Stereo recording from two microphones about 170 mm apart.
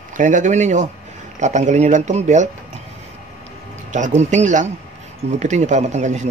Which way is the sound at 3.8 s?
45° right (ahead or behind).